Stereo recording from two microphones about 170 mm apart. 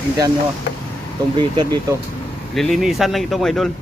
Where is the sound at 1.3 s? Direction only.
30° right (ahead or behind).